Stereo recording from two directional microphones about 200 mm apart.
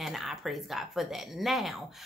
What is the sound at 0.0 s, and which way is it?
Speech, centre (ahead or behind).